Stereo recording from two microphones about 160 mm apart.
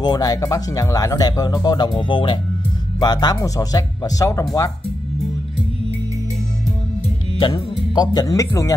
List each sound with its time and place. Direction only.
0.0 s speech: 25° left (ahead or behind)
7.3 s speech: 30° left (ahead or behind)